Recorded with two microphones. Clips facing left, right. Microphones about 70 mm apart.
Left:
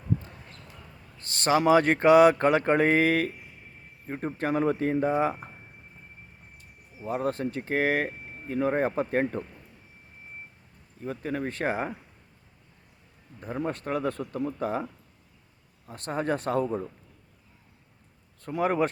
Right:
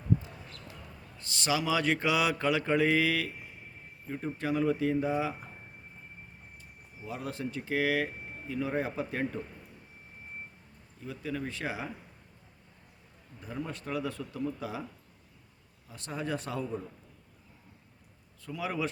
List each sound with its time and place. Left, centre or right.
1.2 s speech: left
7.0 s speech: left
11.0 s speech: left
13.4 s speech: left
15.9 s speech: left
18.4 s speech: left